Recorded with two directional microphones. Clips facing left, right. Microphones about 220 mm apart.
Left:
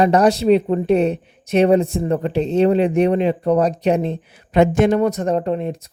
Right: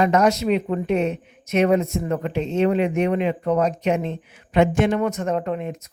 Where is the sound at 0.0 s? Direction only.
35° left (ahead or behind).